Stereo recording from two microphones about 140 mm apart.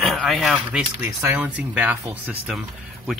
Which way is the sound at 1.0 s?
20° right (ahead or behind).